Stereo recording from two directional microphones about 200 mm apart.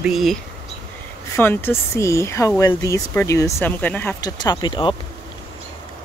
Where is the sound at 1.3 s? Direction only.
10° left (ahead or behind).